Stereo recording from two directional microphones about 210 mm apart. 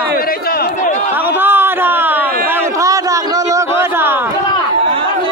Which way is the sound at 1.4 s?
10° right (ahead or behind).